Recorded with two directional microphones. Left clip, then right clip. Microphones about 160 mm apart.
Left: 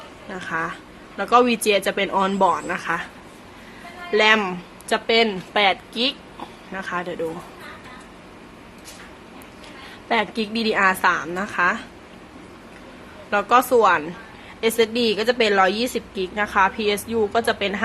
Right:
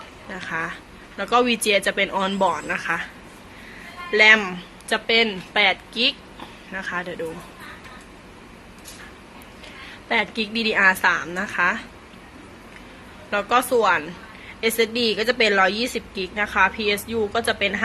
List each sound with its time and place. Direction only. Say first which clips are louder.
0.3 s a woman's voice: left 1 dB; 20° left (ahead or behind)
4.1 s a woman's voice: right 2 dB; 20° left (ahead or behind)
10.1 s a woman's voice: left 1 dB; 25° left (ahead or behind)
13.3 s a woman's voice: left 3 dB; 30° left (ahead or behind)